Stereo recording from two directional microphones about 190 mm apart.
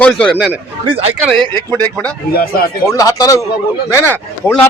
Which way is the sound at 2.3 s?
50° left (ahead or behind).